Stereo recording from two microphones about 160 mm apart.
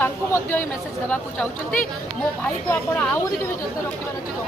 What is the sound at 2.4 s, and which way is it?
Speech, 10° left (ahead or behind).